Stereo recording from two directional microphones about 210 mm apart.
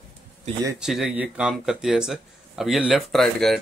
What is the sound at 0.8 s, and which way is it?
Speech, centre (ahead or behind).